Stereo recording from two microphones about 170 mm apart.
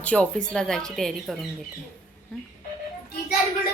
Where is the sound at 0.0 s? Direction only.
5° left (ahead or behind).